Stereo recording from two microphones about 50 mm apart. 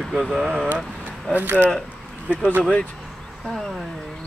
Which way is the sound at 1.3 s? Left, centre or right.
Right.